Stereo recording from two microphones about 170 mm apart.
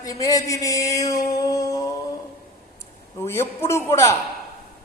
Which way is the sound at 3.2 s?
15° left (ahead or behind).